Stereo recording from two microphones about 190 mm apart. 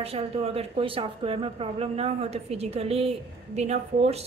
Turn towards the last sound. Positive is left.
turn(degrees=-35)  # may be behind; listen again after turning